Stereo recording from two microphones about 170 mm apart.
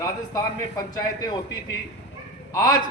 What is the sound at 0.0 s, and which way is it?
A man's voice, 20° left (ahead or behind).